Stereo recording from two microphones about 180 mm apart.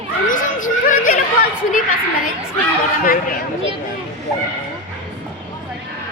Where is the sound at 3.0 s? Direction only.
50° left (ahead or behind).